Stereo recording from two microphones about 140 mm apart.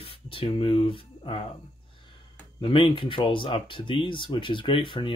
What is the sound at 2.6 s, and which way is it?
Speech, 40° left (ahead or behind).